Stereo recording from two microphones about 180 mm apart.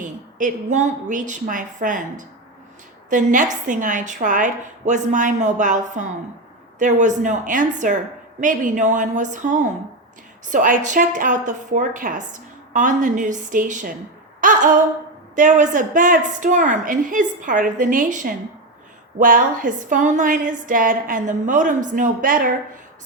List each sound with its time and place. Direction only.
0.0 s a woman's voice: 45° right (ahead or behind)
14.4 s a sound: 45° right (ahead or behind)
15.4 s a woman's voice: 45° right (ahead or behind)